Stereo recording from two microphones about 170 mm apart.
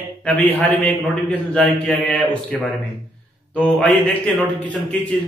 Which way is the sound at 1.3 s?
10° left (ahead or behind).